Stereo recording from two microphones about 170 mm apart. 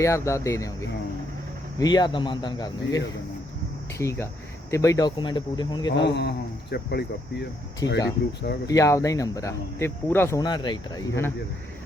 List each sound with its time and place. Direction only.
0.0 s speech: 15° left (ahead or behind)
1.8 s speech: 25° left (ahead or behind)
6.0 s speech: 80° left
7.8 s speech: 25° left (ahead or behind)